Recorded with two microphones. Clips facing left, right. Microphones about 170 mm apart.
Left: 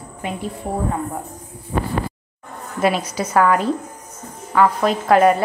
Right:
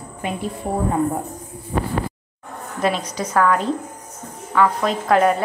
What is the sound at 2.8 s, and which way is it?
A woman's voice, 5° left (ahead or behind).